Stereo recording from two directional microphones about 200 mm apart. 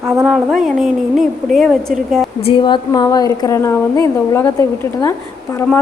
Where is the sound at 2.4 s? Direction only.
25° left (ahead or behind).